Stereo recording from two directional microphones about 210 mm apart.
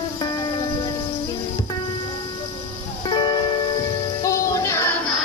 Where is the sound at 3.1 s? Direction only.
20° left (ahead or behind).